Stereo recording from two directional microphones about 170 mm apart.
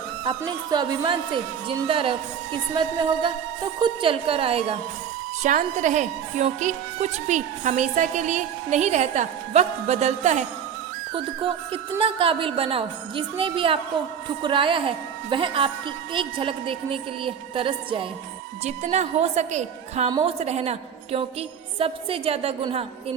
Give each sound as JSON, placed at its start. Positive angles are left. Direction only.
{"t": 0.3, "sound": "a woman's voice", "side_deg": -25}
{"t": 5.4, "sound": "a woman's voice", "side_deg": -50}
{"t": 11.1, "sound": "a woman's voice", "side_deg": -30}
{"t": 18.6, "sound": "speech", "side_deg": -40}
{"t": 20.1, "sound": "a woman's voice", "side_deg": -25}
{"t": 20.4, "sound": "speech", "side_deg": -40}